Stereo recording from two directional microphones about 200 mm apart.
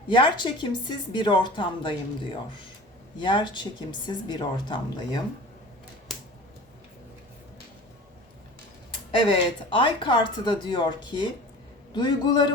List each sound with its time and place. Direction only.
0.1 s speech: 25° left (ahead or behind)
9.3 s speech: 25° left (ahead or behind)